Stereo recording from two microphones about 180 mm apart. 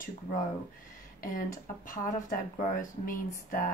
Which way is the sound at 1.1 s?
50° left (ahead or behind).